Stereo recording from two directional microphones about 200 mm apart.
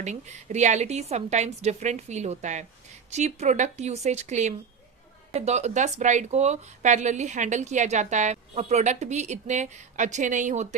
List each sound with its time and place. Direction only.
0.0 s speech: 35° right (ahead or behind)